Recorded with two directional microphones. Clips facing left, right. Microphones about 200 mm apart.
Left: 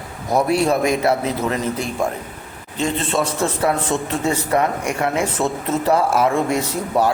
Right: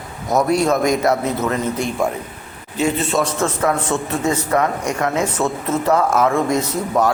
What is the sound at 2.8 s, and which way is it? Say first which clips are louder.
Speech: right 2 dB; 5° right (ahead or behind).